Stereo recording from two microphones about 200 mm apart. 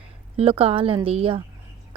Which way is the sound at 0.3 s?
30° right (ahead or behind).